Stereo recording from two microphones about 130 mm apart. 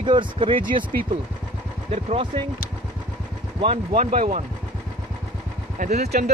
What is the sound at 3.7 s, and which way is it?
Speech, 70° right (ahead or behind).